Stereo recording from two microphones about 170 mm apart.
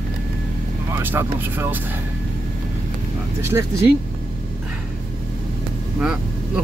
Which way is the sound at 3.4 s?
15° right (ahead or behind).